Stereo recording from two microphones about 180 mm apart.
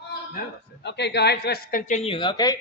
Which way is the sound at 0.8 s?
70° left (ahead or behind).